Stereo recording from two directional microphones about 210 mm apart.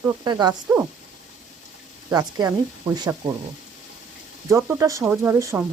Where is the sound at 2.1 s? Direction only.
15° right (ahead or behind).